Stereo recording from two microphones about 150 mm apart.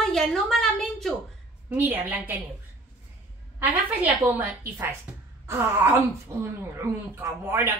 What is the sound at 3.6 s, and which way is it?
Speech, 10° right (ahead or behind).